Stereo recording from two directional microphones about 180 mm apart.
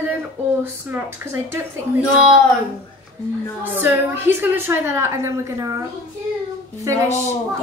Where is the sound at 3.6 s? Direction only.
10° right (ahead or behind).